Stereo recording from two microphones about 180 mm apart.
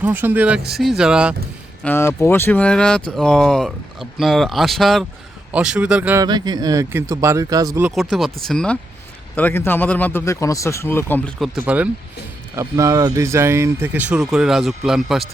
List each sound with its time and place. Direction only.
0.0 s speech: 10° right (ahead or behind)
1.8 s speech: 10° left (ahead or behind); by 6.2 s 10° right (ahead or behind)
6.2 s speech: 25° right (ahead or behind)
7.9 s speech: centre (ahead or behind)
11.3 s speech: centre (ahead or behind)